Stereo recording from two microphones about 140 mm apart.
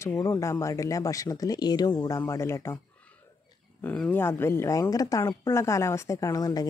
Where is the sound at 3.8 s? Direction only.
10° left (ahead or behind).